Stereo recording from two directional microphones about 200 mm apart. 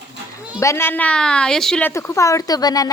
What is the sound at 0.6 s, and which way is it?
Speech, 15° left (ahead or behind).